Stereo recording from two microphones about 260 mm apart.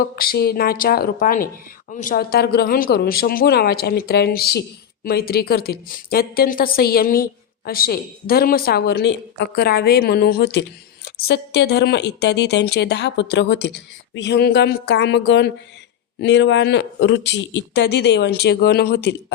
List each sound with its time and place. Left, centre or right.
0.0 s a woman's voice: left